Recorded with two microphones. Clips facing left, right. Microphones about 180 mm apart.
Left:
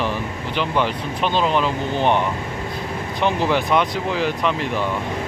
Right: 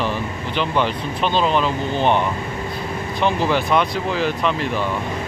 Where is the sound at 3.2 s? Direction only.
15° left (ahead or behind).